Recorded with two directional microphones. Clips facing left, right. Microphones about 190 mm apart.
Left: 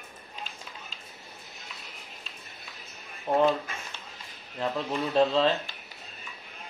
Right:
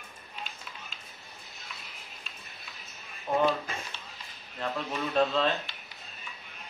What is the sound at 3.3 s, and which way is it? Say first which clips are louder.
Speech: left 3 dB; 30° left (ahead or behind).